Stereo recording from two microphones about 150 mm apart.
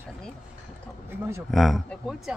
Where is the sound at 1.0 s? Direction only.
20° right (ahead or behind).